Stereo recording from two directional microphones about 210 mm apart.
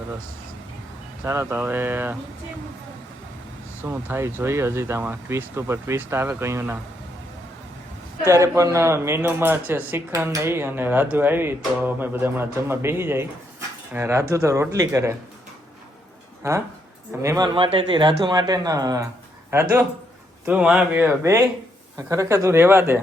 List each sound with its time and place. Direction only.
1.2 s a man's voice: 15° right (ahead or behind)
3.8 s a man's voice: 10° right (ahead or behind)
8.2 s a man's voice: 15° right (ahead or behind)
16.4 s a man's voice: 15° right (ahead or behind)
20.4 s a man's voice: 5° right (ahead or behind)